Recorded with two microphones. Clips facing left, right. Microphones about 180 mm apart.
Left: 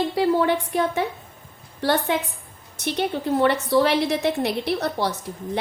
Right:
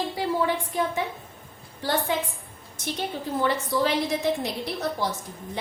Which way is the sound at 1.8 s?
70° left (ahead or behind).